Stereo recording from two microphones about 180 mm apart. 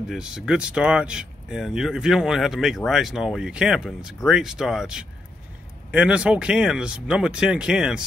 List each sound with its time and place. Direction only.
0.1 s speech: 5° right (ahead or behind)